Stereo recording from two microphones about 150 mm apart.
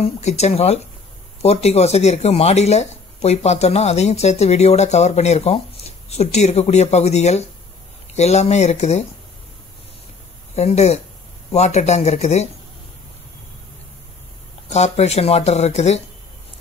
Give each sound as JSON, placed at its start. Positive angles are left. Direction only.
{"t": 0.0, "sound": "speech", "side_deg": 45}
{"t": 10.5, "sound": "speech", "side_deg": 45}
{"t": 14.7, "sound": "speech", "side_deg": 45}